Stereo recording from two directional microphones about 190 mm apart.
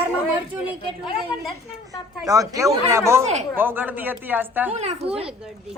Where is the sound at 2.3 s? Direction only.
15° right (ahead or behind).